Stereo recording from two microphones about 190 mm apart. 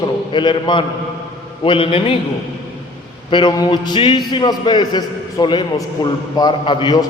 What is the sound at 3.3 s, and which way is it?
A man's voice, 25° left (ahead or behind).